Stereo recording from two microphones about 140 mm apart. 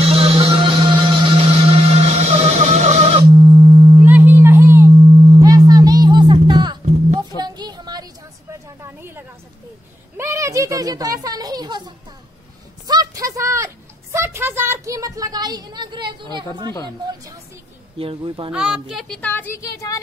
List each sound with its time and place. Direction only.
0.0 s music: 45° right (ahead or behind)
3.3 s music: 30° right (ahead or behind)
4.0 s sine wave: 15° right (ahead or behind)
4.9 s sine wave: 35° right (ahead or behind)
5.7 s music: 25° right (ahead or behind)
7.2 s a sound: 30° right (ahead or behind)
17.9 s a sound: 40° right (ahead or behind)
18.5 s speech: 5° right (ahead or behind); by 20.0 s 25° left (ahead or behind)